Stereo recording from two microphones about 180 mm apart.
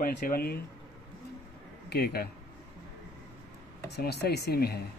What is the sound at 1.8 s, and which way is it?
Speech, 60° left (ahead or behind).